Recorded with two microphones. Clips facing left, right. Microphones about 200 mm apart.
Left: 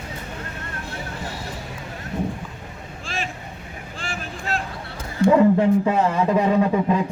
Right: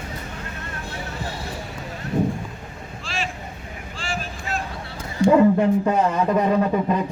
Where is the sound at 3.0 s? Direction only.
50° left (ahead or behind).